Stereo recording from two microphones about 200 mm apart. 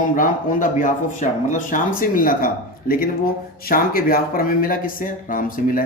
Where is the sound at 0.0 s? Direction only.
40° left (ahead or behind).